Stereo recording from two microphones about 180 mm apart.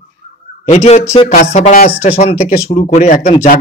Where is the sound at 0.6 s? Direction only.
35° left (ahead or behind).